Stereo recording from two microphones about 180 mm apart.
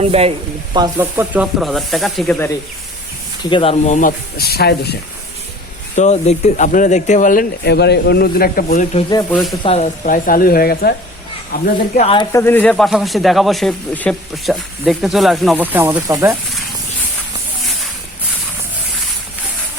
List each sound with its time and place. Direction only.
0.0 s speech: 35° right (ahead or behind)
0.9 s speech: 10° right (ahead or behind)
3.5 s speech: 30° left (ahead or behind)
4.4 s speech: 60° left (ahead or behind)
6.0 s speech: 40° left (ahead or behind)
9.3 s speech: centre (ahead or behind)
9.6 s speech: 35° left (ahead or behind)
10.1 s speech: 50° left (ahead or behind)
11.9 s speech: 35° left (ahead or behind)
12.3 s speech: 10° left (ahead or behind); by 16.3 s 15° right (ahead or behind)